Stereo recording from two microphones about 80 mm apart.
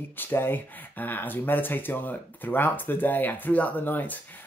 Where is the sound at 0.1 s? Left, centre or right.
Left.